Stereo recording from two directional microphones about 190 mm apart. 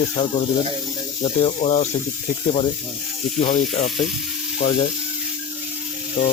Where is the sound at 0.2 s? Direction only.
30° left (ahead or behind).